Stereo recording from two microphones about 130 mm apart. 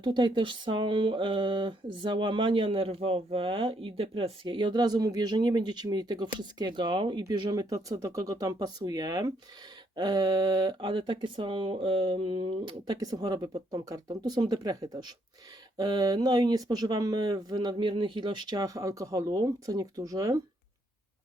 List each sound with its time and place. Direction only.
0.0 s speech: 35° right (ahead or behind)